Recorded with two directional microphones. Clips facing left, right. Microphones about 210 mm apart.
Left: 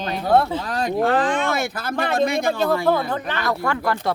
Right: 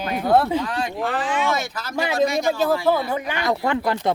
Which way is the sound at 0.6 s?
40° left (ahead or behind).